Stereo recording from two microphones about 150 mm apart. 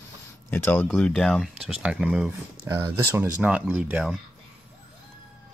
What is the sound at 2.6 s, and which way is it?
Speech, 20° right (ahead or behind).